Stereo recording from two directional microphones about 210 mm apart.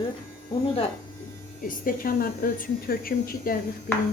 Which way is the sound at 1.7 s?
45° left (ahead or behind).